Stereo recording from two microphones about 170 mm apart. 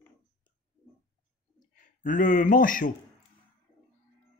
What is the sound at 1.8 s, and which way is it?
Speech, 50° left (ahead or behind).